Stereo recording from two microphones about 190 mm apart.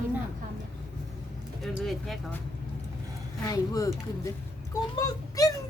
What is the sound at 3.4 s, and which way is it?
A child's voice, 20° left (ahead or behind).